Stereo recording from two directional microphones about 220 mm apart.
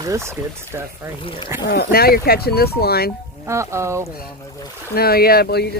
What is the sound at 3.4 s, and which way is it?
Speech, 15° right (ahead or behind).